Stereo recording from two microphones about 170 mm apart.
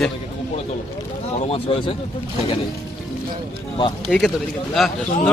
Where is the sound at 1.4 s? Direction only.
35° left (ahead or behind).